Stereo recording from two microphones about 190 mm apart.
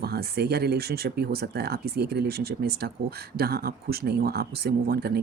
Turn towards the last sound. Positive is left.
turn(degrees=-55)  # may be behind; listen again after turning